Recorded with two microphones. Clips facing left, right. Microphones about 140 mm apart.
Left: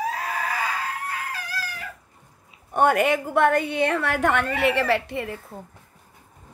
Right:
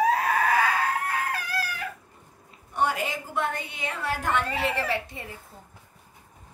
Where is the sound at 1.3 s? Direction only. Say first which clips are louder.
Right 2 dB; 60° right (ahead or behind).